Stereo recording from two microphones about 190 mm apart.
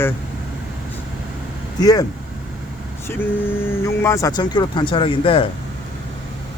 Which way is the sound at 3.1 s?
10° left (ahead or behind).